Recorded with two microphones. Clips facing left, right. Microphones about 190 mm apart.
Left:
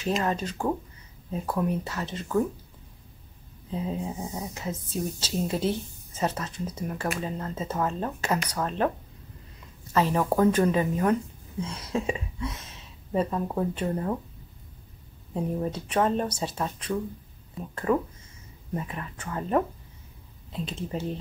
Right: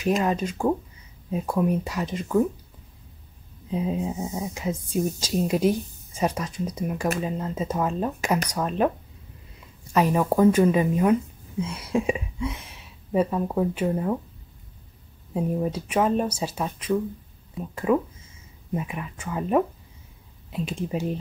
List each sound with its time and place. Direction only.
0.2 s speech: 10° right (ahead or behind)
3.7 s speech: 15° right (ahead or behind)
9.9 s speech: 15° right (ahead or behind)
15.3 s speech: 10° right (ahead or behind)